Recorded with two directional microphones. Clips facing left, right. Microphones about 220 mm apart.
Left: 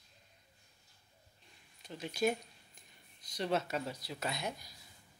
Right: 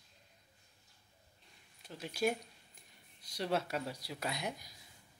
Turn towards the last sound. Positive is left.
turn(degrees=-15)  # may be behind; listen again after turning